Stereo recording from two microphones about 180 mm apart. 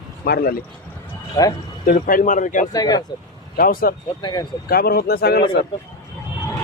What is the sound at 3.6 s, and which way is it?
Speech, 55° left (ahead or behind).